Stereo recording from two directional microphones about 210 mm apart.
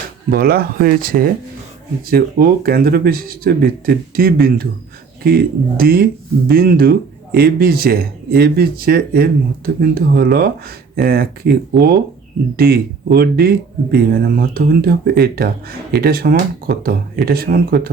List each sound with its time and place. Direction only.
0.3 s speech: 45° right (ahead or behind)